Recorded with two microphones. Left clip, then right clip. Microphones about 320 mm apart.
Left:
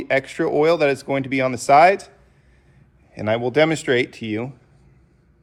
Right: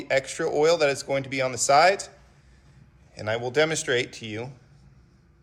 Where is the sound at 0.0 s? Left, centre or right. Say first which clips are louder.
Left 4 dB; left.